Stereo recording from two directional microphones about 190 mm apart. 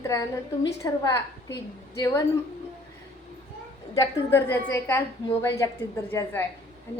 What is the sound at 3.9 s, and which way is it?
A woman's voice, 15° left (ahead or behind).